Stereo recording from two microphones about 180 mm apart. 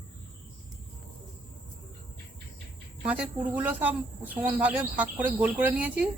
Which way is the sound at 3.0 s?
10° right (ahead or behind).